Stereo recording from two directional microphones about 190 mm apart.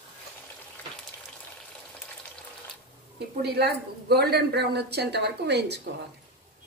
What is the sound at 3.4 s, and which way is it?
Speech, 60° right (ahead or behind).